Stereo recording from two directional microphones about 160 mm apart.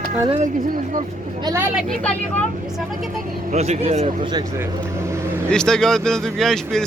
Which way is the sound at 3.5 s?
45° right (ahead or behind).